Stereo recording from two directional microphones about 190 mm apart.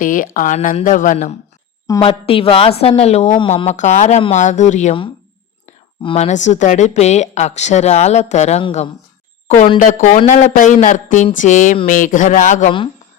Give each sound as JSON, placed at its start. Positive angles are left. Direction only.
{"t": 0.0, "sound": "speech", "side_deg": 45}
{"t": 2.0, "sound": "a woman's voice", "side_deg": 30}